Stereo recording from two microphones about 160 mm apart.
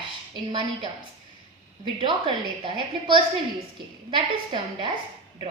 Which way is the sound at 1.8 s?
30° right (ahead or behind).